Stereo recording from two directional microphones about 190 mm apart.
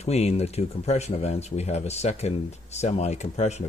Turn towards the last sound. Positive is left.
turn(degrees=35)  # may be behind; listen again after turning